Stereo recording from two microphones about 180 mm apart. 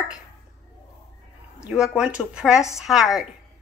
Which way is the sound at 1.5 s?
5° right (ahead or behind).